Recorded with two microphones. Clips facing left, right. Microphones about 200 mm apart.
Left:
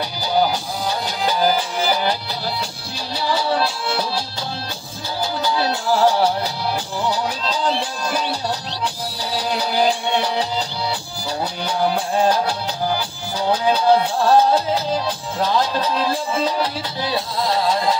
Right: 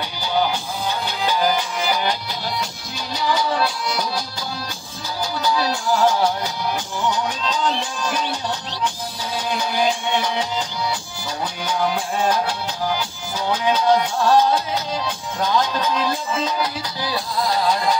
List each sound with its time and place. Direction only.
0.3 s music: 35° left (ahead or behind)
3.2 s music: 30° left (ahead or behind)
5.4 s music: 30° left (ahead or behind)
11.6 s music: 35° left (ahead or behind)